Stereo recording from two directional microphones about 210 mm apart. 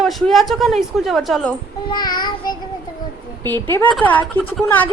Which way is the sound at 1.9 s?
20° left (ahead or behind).